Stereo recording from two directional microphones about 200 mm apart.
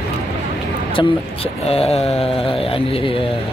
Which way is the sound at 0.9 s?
30° left (ahead or behind).